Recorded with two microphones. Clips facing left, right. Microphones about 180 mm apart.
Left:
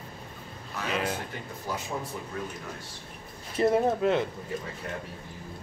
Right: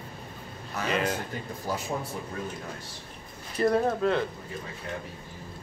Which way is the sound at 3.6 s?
20° left (ahead or behind).